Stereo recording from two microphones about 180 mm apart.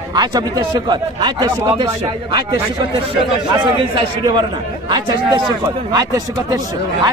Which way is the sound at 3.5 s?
25° right (ahead or behind).